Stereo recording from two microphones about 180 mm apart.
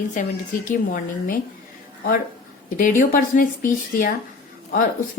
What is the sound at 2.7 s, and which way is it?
A woman's voice, 50° left (ahead or behind).